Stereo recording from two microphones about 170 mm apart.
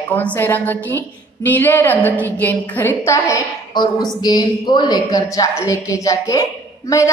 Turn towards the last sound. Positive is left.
turn(degrees=20)  # may be behind; listen again after turning